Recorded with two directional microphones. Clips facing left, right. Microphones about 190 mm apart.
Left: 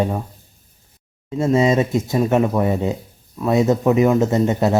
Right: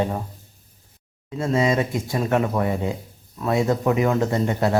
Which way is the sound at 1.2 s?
25° left (ahead or behind).